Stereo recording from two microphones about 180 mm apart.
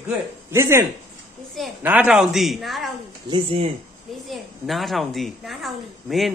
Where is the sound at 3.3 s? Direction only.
30° right (ahead or behind).